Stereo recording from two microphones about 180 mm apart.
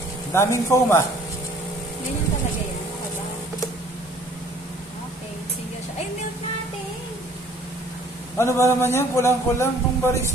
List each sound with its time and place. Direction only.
0.3 s a man's voice: 15° left (ahead or behind)
8.4 s a man's voice: 15° left (ahead or behind)